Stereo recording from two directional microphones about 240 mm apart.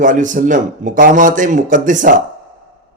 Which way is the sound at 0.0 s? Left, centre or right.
Right.